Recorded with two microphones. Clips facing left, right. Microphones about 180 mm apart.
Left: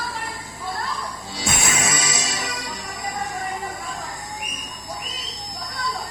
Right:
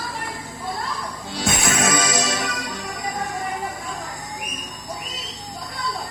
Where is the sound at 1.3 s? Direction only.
60° right (ahead or behind).